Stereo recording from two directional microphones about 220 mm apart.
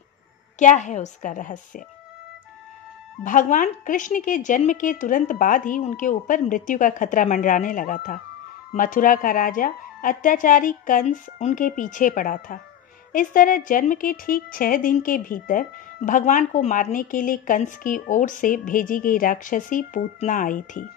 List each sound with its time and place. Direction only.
0.6 s a woman's voice: 35° left (ahead or behind)
3.3 s a woman's voice: 35° left (ahead or behind)